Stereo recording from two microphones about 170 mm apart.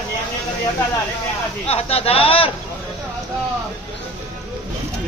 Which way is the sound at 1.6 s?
35° left (ahead or behind).